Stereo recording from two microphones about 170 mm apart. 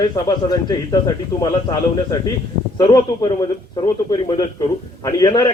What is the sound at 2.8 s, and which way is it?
Speech, 25° left (ahead or behind).